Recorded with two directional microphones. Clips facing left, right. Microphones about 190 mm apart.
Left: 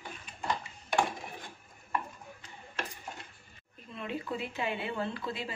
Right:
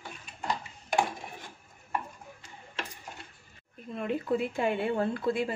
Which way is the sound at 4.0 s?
50° right (ahead or behind).